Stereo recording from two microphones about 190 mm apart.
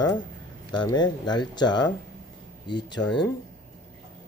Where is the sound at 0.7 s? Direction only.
20° left (ahead or behind).